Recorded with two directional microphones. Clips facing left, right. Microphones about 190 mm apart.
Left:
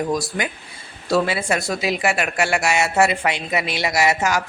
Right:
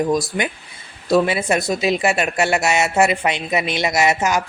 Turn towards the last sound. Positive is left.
turn(degrees=-20)  # may be behind; listen again after turning